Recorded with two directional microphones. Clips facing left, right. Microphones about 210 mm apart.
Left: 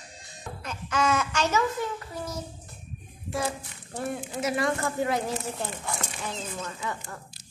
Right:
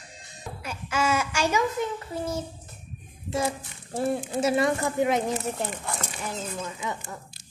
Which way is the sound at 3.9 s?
30° right (ahead or behind).